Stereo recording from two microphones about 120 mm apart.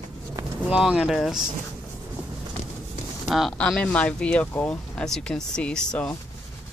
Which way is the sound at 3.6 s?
10° left (ahead or behind).